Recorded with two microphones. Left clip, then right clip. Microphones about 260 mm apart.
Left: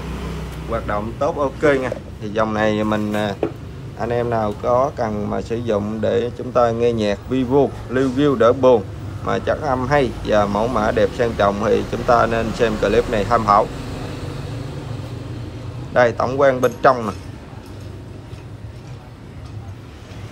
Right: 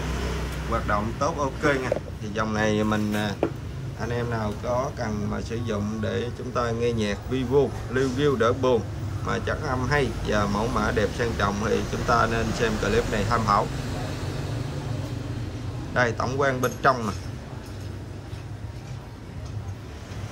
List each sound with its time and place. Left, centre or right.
0.8 s speech: centre
15.9 s speech: centre